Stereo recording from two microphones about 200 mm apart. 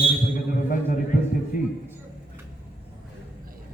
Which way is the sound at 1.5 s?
45° left (ahead or behind).